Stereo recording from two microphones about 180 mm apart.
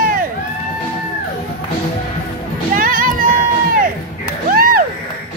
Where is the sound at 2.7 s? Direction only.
50° right (ahead or behind).